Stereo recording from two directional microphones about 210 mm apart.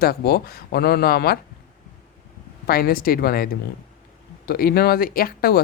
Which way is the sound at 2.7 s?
45° left (ahead or behind).